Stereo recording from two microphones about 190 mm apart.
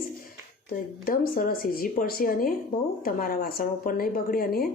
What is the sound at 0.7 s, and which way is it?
A woman's voice, 50° left (ahead or behind).